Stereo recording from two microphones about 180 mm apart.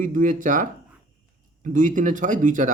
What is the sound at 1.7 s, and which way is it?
Speech, 45° right (ahead or behind).